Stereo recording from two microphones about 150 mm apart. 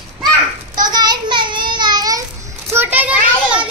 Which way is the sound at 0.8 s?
30° right (ahead or behind).